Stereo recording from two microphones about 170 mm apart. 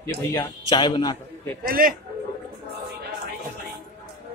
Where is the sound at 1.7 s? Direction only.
55° right (ahead or behind).